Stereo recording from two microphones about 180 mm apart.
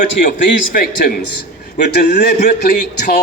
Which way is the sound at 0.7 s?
55° left (ahead or behind).